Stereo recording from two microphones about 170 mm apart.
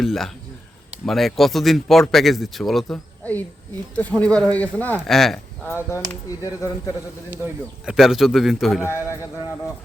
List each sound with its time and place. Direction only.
0.0 s a sound: centre (ahead or behind)
1.0 s speech: centre (ahead or behind)
5.6 s speech: 15° left (ahead or behind)
7.3 s speech: 10° right (ahead or behind)